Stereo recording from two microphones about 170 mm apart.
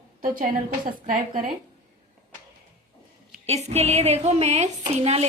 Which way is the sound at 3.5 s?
40° right (ahead or behind).